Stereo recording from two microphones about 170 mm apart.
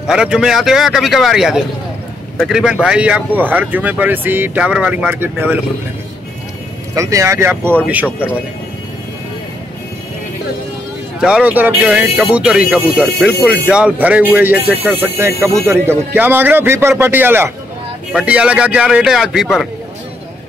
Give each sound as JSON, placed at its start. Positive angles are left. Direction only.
{"t": 0.0, "sound": "speech", "side_deg": -5}
{"t": 7.0, "sound": "speech", "side_deg": -20}
{"t": 11.1, "sound": "speech", "side_deg": -5}